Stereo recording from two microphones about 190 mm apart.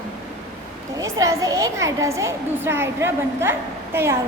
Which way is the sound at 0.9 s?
15° right (ahead or behind).